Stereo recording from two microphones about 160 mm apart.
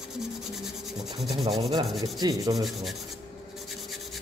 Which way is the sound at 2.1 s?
25° right (ahead or behind).